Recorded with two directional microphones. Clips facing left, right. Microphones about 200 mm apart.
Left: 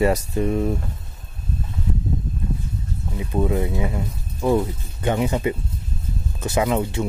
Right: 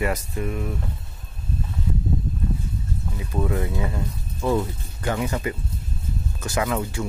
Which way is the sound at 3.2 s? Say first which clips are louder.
Left 4 dB; 20° left (ahead or behind).